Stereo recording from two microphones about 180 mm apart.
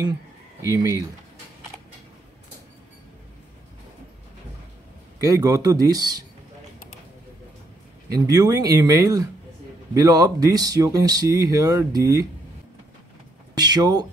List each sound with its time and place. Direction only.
0.6 s speech: 15° right (ahead or behind)
5.2 s speech: 20° right (ahead or behind)
8.1 s speech: 20° right (ahead or behind)
13.6 s speech: 20° right (ahead or behind)